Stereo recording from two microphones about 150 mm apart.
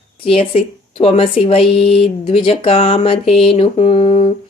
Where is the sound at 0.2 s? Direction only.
40° left (ahead or behind).